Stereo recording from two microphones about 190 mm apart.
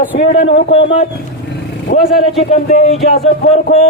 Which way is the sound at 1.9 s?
65° left (ahead or behind).